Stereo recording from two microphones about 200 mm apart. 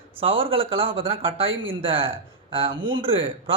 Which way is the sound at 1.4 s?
75° right (ahead or behind).